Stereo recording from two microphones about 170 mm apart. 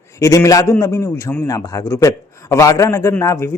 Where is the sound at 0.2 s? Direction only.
20° left (ahead or behind).